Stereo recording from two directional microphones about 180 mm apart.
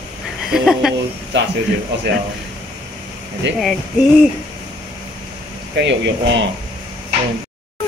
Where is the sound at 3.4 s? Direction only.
80° right.